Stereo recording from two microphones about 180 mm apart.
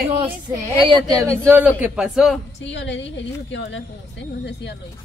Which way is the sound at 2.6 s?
90° left.